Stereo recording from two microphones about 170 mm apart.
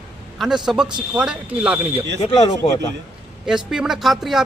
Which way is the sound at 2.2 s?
35° left (ahead or behind).